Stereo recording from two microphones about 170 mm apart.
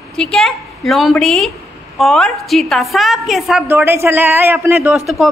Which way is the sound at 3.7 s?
15° right (ahead or behind).